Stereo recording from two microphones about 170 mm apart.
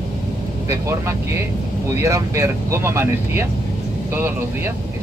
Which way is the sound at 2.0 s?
15° right (ahead or behind).